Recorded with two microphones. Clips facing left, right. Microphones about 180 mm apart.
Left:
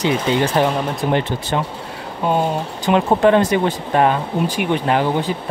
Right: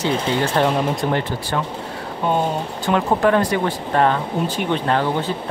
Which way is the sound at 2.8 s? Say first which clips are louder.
Left 3 dB; 20° left (ahead or behind).